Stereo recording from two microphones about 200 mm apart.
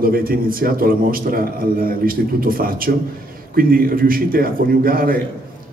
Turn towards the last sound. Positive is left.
turn(degrees=-45)  # may be behind; listen again after turning